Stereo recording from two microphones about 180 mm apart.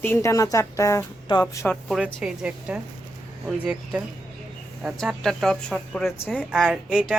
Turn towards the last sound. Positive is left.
turn(degrees=-5)  # may be behind; listen again after turning